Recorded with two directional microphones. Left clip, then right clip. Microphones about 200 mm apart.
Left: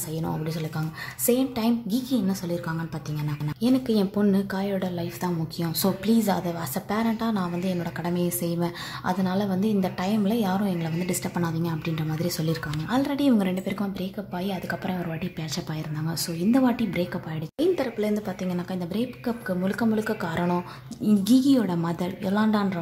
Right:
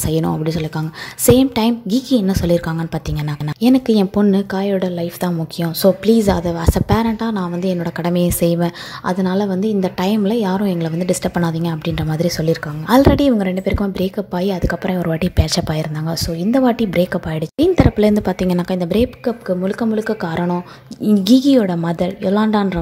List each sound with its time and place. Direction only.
0.1 s a woman's voice: 35° right (ahead or behind)
13.3 s a woman's voice: 20° right (ahead or behind)